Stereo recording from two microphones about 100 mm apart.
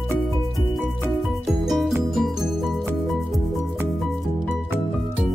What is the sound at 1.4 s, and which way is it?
Music, centre (ahead or behind).